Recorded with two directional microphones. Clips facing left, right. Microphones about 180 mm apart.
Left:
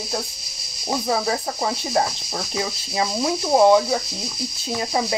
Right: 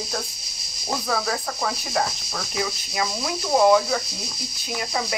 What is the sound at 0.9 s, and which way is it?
Speech, 20° left (ahead or behind).